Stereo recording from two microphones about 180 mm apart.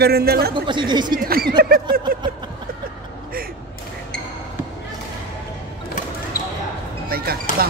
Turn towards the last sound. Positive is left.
turn(degrees=-55)  # may be behind; listen again after turning